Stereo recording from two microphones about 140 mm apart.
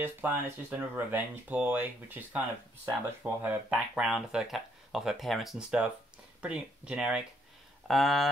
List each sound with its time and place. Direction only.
0.0 s speech: 10° right (ahead or behind)